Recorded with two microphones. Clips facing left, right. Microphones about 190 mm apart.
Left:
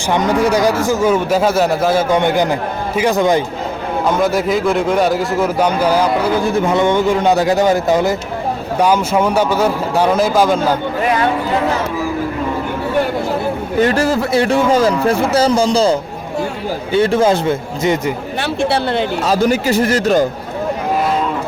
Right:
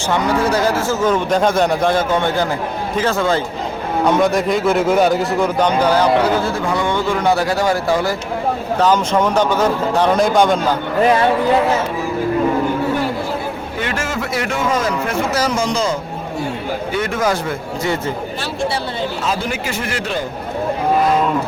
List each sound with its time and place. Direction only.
0.1 s a man's voice: 15° left (ahead or behind)
4.0 s a man's voice: centre (ahead or behind); by 8.1 s 20° left (ahead or behind)
8.8 s a man's voice: 10° left (ahead or behind)
13.7 s a man's voice: 40° left (ahead or behind); by 18.1 s 20° left (ahead or behind)
18.3 s speech: 65° left (ahead or behind)
19.2 s a man's voice: 40° left (ahead or behind)